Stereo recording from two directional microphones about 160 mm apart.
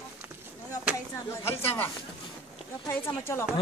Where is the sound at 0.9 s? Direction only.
15° left (ahead or behind).